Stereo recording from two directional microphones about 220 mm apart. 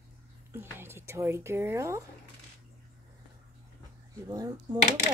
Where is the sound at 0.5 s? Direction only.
10° right (ahead or behind).